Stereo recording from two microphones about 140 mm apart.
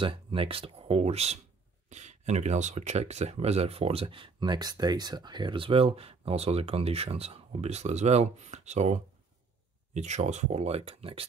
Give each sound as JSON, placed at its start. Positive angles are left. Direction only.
{"t": 0.0, "sound": "speech", "side_deg": -40}